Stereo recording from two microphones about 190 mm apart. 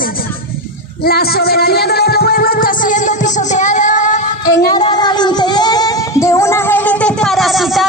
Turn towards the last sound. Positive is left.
turn(degrees=0)  # may be behind; listen again after turning